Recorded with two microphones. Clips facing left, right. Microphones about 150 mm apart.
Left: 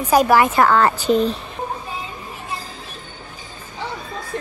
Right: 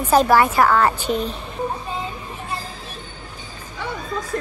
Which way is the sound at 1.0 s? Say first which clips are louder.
Left 6 dB; 35° left (ahead or behind).